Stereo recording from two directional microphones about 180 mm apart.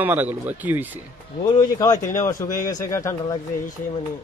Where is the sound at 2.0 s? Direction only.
50° left (ahead or behind).